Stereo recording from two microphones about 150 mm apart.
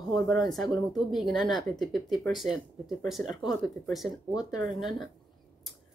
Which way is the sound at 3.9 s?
5° right (ahead or behind).